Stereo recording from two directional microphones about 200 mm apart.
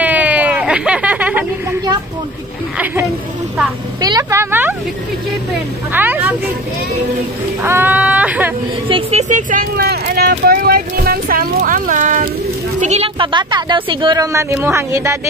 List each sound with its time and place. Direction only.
0.0 s a sound: 5° right (ahead or behind)
4.0 s speech: 15° right (ahead or behind)
7.6 s speech: 10° right (ahead or behind)
8.8 s speech: 25° right (ahead or behind)
9.3 s speech: 40° right (ahead or behind); by 15.1 s 15° right (ahead or behind)